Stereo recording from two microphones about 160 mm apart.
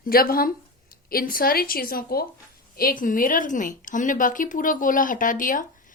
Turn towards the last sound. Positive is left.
turn(degrees=55)  # may be behind; listen again after turning